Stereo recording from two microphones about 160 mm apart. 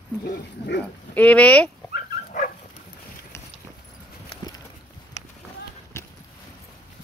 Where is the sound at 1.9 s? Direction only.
55° left (ahead or behind).